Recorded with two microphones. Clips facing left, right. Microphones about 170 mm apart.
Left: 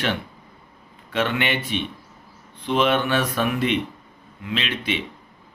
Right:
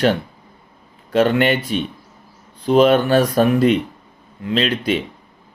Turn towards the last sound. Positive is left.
turn(degrees=-40)  # may be behind; listen again after turning